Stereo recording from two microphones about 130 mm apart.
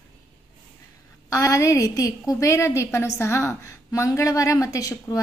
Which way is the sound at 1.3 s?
25° left (ahead or behind).